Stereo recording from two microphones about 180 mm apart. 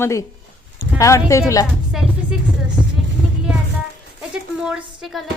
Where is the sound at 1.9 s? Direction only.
Centre (ahead or behind).